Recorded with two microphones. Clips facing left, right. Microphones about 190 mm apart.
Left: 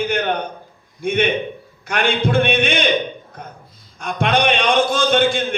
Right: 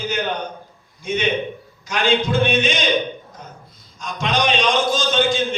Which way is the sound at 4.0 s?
60° left (ahead or behind).